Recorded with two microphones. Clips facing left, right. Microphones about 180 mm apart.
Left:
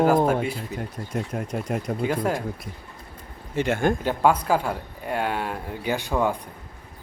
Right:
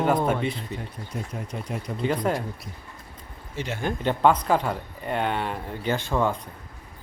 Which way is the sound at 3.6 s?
50° left (ahead or behind).